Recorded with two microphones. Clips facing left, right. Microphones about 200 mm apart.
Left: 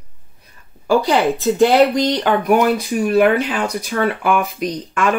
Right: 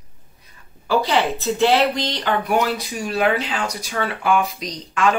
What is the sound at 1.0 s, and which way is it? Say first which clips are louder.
Speech: left 4 dB; 45° left (ahead or behind).